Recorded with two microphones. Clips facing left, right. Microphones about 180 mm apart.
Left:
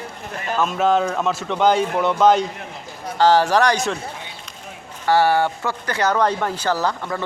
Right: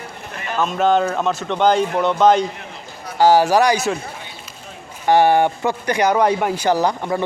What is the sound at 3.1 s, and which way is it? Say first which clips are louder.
Speech: right 2 dB; 10° right (ahead or behind).